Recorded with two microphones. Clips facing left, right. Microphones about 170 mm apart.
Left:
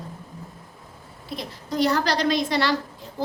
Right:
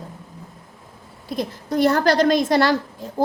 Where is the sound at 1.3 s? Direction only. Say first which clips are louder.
Right 6 dB; 50° right (ahead or behind).